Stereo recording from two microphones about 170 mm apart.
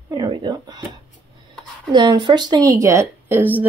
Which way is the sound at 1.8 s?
25° right (ahead or behind).